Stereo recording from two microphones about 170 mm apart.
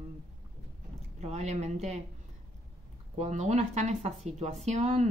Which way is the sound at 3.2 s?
45° right (ahead or behind).